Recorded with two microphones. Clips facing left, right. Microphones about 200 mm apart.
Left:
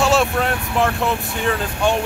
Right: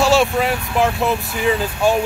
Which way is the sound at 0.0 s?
Centre (ahead or behind).